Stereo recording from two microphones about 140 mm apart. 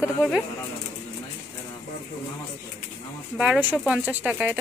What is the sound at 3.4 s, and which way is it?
A woman's voice, 10° right (ahead or behind).